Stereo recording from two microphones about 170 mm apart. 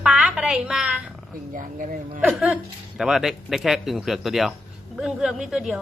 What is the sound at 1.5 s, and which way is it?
Speech, 50° right (ahead or behind).